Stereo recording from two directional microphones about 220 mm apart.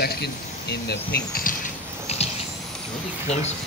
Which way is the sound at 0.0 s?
45° left (ahead or behind).